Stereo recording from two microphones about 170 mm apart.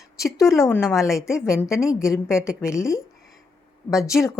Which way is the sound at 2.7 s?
15° left (ahead or behind).